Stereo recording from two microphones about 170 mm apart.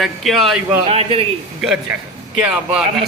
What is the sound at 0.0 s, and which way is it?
Speech, centre (ahead or behind).